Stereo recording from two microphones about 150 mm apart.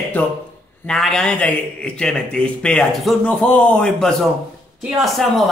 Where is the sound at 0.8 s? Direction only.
5° left (ahead or behind).